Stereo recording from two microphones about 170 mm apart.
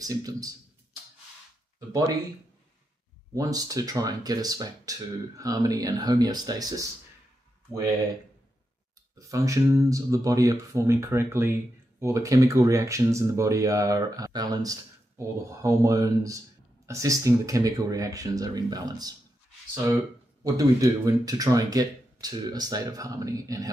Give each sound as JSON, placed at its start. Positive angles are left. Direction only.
{"t": 0.0, "sound": "speech", "side_deg": -20}
{"t": 3.3, "sound": "speech", "side_deg": -20}
{"t": 9.2, "sound": "speech", "side_deg": -20}
{"t": 20.4, "sound": "speech", "side_deg": -20}